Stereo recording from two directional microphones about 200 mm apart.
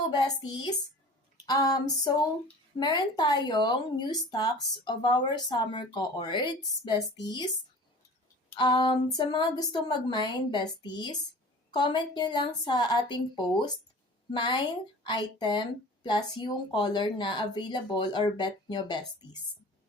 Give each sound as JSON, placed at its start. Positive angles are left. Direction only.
{"t": 0.2, "sound": "speech", "side_deg": 20}
{"t": 8.5, "sound": "speech", "side_deg": 20}